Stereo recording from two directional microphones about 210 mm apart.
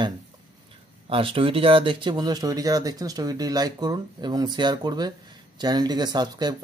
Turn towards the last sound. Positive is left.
turn(degrees=-20)  # may be behind; listen again after turning